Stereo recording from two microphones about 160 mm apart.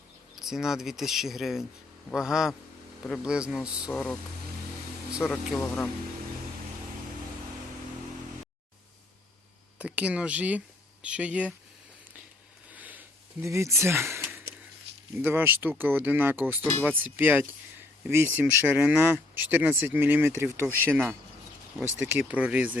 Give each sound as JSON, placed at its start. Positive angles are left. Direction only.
{"t": 0.3, "sound": "speech", "side_deg": -5}
{"t": 3.9, "sound": "speech", "side_deg": 5}
{"t": 9.7, "sound": "speech", "side_deg": -10}
{"t": 12.7, "sound": "a sound", "side_deg": -10}
{"t": 15.1, "sound": "speech", "side_deg": -10}